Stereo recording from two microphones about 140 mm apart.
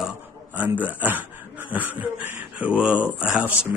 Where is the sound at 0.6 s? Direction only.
10° right (ahead or behind).